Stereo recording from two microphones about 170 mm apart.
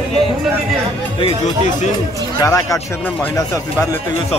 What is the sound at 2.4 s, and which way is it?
Speech, 20° left (ahead or behind).